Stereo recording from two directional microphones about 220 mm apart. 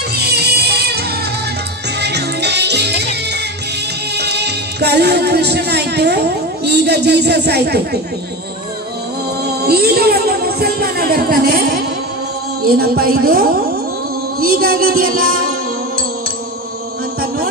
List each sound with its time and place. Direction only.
0.1 s music: 45° right (ahead or behind)
9.4 s music: 45° right (ahead or behind)